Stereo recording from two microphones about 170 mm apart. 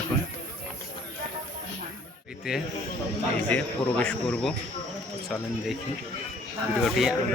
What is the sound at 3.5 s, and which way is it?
Speech, 5° left (ahead or behind).